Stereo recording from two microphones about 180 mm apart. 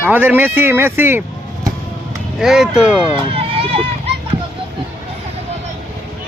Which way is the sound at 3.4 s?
30° right (ahead or behind).